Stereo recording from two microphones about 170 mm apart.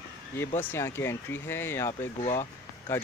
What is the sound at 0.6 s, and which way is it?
Speech, 15° left (ahead or behind).